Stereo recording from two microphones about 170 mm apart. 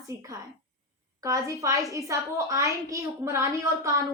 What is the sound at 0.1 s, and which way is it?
A woman's voice, 15° right (ahead or behind).